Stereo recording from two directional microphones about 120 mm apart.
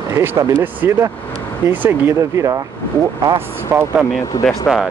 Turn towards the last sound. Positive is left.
turn(degrees=0)  # may be behind; listen again after turning